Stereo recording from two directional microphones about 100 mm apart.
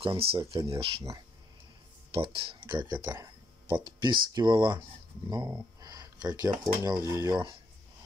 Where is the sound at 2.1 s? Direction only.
65° right (ahead or behind).